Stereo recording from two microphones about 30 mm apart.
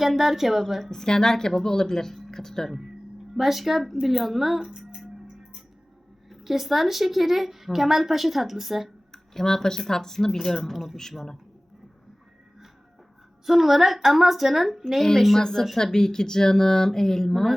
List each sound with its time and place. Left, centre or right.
0.0 s a woman's voice: centre
0.9 s a woman's voice: left
3.3 s a woman's voice: centre
6.3 s a woman's voice: centre
9.1 s a woman's voice: centre
13.4 s a woman's voice: centre
15.4 s a woman's voice: centre